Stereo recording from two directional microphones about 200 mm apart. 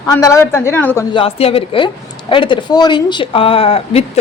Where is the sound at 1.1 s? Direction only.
30° left (ahead or behind).